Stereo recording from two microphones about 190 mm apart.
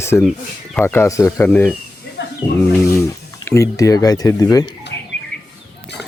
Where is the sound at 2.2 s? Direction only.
65° left (ahead or behind).